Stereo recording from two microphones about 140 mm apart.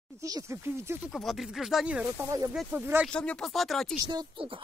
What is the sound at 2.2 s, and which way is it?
Speech, 20° right (ahead or behind).